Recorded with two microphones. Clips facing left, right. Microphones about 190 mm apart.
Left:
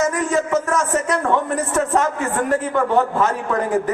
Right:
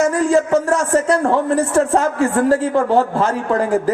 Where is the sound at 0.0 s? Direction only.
30° right (ahead or behind).